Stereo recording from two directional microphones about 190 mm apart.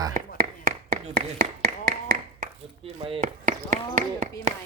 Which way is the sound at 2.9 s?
30° right (ahead or behind).